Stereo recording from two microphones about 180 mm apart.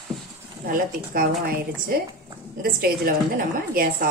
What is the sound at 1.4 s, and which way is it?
A woman's voice, 55° right (ahead or behind).